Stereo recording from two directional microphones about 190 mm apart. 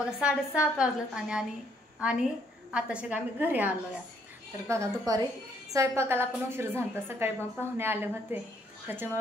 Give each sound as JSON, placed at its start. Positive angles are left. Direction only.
{"t": 0.0, "sound": "a woman's voice", "side_deg": -5}